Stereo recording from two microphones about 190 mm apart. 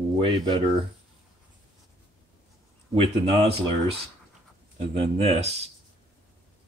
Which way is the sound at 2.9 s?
30° right (ahead or behind).